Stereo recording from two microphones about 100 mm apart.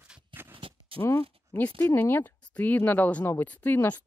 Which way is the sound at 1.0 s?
30° left (ahead or behind).